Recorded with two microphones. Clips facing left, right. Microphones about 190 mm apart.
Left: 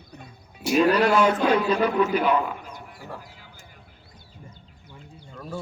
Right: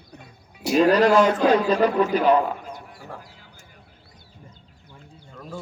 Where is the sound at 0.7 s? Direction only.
40° right (ahead or behind).